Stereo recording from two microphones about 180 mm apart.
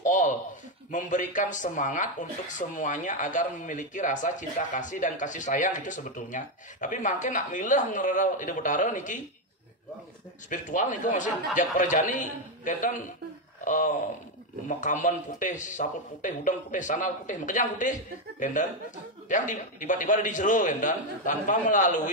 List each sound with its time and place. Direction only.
0.0 s a sound: 45° left (ahead or behind)
0.9 s speech: 45° left (ahead or behind)
10.5 s speech: 45° left (ahead or behind)